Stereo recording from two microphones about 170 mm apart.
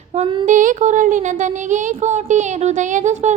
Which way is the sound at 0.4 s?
50° right (ahead or behind).